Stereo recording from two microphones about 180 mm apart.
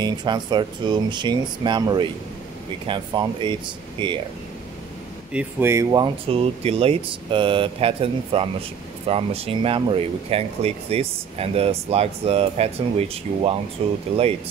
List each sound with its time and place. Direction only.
0.0 s speech: 25° right (ahead or behind)
5.3 s speech: 10° right (ahead or behind); by 13.9 s 35° right (ahead or behind)